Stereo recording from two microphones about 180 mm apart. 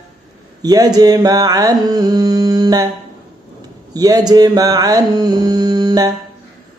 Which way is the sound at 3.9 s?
20° right (ahead or behind).